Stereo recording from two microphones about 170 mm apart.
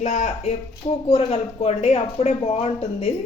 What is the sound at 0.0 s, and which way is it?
Speech, 45° left (ahead or behind).